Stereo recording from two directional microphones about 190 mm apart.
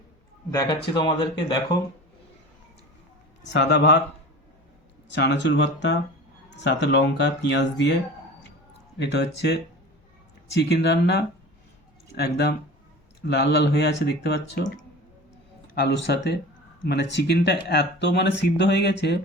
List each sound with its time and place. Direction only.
0.9 s speech: 20° left (ahead or behind)
3.5 s speech: 65° left (ahead or behind)
5.0 s speech: 65° left (ahead or behind)
9.0 s speech: 65° left (ahead or behind)
15.7 s speech: 65° left (ahead or behind)